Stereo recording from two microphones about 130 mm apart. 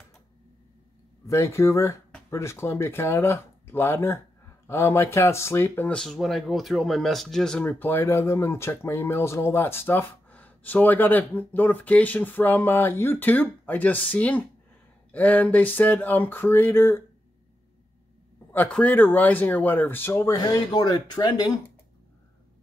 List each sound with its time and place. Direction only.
1.2 s speech: 25° left (ahead or behind)
18.5 s speech: 10° left (ahead or behind)
20.3 s speech: 30° left (ahead or behind)